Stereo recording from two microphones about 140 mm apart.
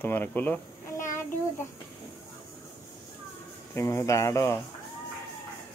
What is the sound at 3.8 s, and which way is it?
Speech, 20° left (ahead or behind).